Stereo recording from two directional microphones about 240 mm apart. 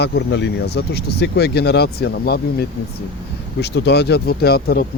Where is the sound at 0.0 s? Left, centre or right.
Left.